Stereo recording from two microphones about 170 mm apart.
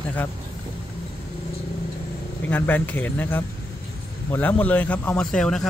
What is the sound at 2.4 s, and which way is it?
Speech, 10° left (ahead or behind).